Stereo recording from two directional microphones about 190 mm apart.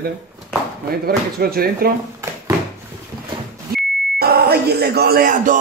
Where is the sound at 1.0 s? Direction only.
50° right (ahead or behind).